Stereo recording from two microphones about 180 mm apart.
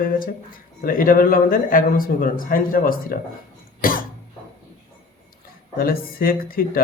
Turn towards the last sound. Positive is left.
turn(degrees=55)  # may be behind; listen again after turning